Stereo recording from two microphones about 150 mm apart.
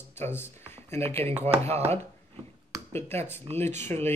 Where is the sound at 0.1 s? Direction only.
15° left (ahead or behind).